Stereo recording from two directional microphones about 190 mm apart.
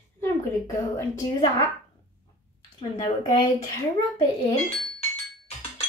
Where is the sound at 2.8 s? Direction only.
20° left (ahead or behind).